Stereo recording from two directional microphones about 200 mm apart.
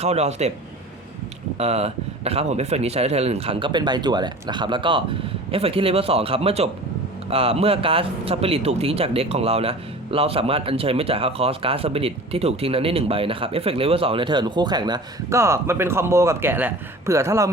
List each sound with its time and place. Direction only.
0.0 s speech: 35° right (ahead or behind)
1.5 s speech: 30° right (ahead or behind); by 17.5 s 15° right (ahead or behind)